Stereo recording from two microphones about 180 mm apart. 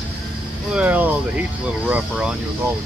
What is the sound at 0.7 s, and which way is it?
Speech, 10° right (ahead or behind).